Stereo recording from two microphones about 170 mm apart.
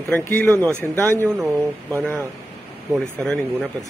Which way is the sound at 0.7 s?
15° right (ahead or behind).